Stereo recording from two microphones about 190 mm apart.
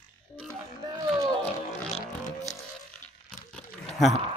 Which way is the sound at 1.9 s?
35° left (ahead or behind).